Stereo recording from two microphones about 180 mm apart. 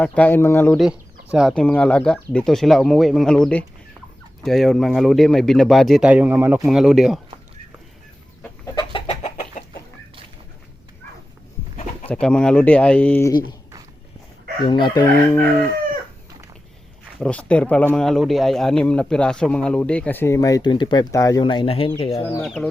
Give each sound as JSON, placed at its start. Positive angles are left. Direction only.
{"t": 0.0, "sound": "a man's voice", "side_deg": 10}
{"t": 0.8, "sound": "speech", "side_deg": -5}
{"t": 8.6, "sound": "chicken", "side_deg": 25}
{"t": 9.0, "sound": "chicken", "side_deg": 40}
{"t": 12.0, "sound": "a man's voice", "side_deg": 5}
{"t": 13.3, "sound": "chicken", "side_deg": 25}
{"t": 14.6, "sound": "chicken", "side_deg": 25}
{"t": 17.2, "sound": "a man's voice", "side_deg": 5}
{"t": 22.4, "sound": "speech", "side_deg": 5}